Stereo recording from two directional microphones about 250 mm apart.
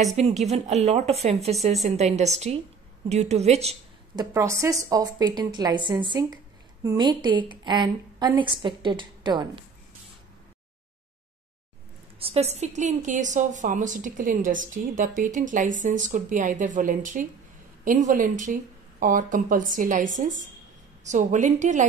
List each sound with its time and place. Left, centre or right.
0.2 s a woman's voice: right
12.2 s a woman's voice: right